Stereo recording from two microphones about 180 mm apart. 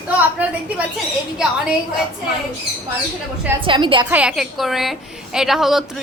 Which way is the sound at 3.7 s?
25° right (ahead or behind).